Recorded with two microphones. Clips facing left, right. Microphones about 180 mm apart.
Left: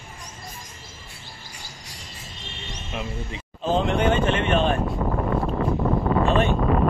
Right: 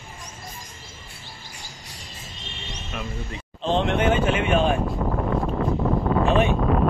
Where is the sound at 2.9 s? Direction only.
20° left (ahead or behind).